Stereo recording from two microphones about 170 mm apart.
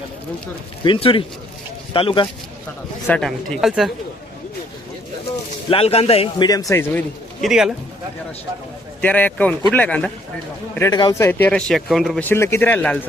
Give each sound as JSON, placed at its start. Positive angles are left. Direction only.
{"t": 0.9, "sound": "a man's voice", "side_deg": 30}
{"t": 3.1, "sound": "speech", "side_deg": 5}
{"t": 5.7, "sound": "a man's voice", "side_deg": 35}
{"t": 6.5, "sound": "a man's voice", "side_deg": 20}
{"t": 7.4, "sound": "speech", "side_deg": -5}
{"t": 9.0, "sound": "speech", "side_deg": 10}
{"t": 10.9, "sound": "speech", "side_deg": 20}
{"t": 12.3, "sound": "speech", "side_deg": 15}